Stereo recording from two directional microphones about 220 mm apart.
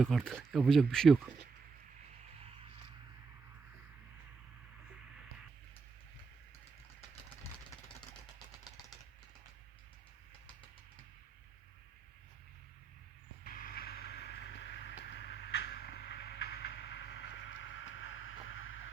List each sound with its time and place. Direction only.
0.0 s speech: centre (ahead or behind)
13.4 s vehicle: 40° left (ahead or behind); by 18.9 s 65° left (ahead or behind)